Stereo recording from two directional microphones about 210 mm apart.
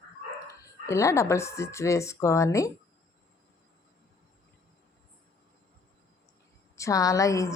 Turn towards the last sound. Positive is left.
turn(degrees=15)  # may be behind; listen again after turning